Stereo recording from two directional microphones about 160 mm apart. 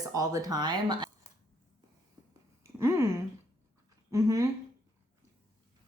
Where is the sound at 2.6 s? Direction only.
15° right (ahead or behind).